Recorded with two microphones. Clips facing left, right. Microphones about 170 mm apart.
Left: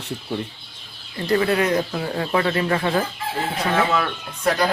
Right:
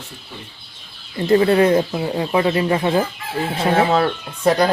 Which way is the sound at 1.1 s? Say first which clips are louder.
Right 5 dB; 25° right (ahead or behind).